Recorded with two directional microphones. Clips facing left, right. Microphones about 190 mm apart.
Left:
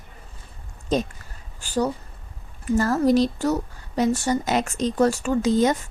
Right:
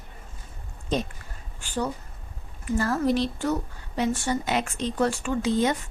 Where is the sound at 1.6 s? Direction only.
40° left (ahead or behind).